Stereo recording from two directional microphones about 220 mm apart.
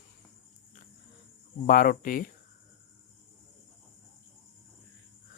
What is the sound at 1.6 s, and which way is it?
Speech, 40° left (ahead or behind).